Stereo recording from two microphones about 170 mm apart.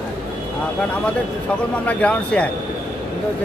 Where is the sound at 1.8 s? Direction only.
5° left (ahead or behind).